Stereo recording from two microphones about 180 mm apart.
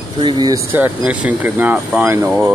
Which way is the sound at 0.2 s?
25° right (ahead or behind).